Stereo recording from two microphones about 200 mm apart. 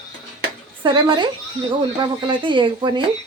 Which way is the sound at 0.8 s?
20° right (ahead or behind).